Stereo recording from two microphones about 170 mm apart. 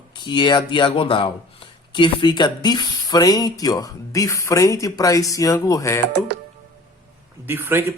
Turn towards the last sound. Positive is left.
turn(degrees=-10)  # may be behind; listen again after turning